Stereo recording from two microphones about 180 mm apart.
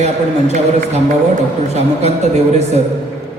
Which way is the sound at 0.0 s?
40° right (ahead or behind).